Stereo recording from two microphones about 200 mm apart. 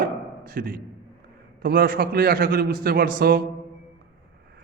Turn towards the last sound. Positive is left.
turn(degrees=-50)  # may be behind; listen again after turning